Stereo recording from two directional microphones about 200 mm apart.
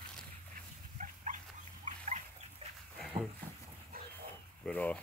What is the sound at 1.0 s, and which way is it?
Dog, 40° right (ahead or behind).